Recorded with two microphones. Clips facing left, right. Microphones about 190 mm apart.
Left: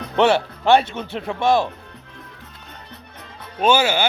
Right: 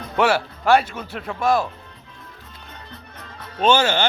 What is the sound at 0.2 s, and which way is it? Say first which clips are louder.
A man's voice: left 3 dB; 25° left (ahead or behind).